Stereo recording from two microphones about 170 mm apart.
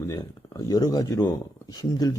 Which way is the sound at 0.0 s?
20° left (ahead or behind).